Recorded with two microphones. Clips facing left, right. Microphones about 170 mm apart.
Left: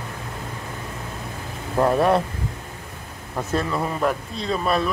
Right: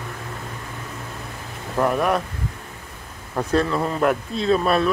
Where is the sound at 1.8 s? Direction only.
30° left (ahead or behind).